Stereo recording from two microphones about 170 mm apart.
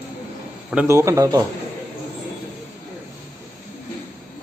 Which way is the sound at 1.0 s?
20° right (ahead or behind).